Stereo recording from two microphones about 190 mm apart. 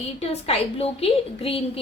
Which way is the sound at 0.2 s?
30° left (ahead or behind).